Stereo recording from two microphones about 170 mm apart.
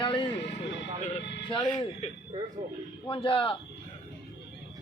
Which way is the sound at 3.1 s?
30° left (ahead or behind).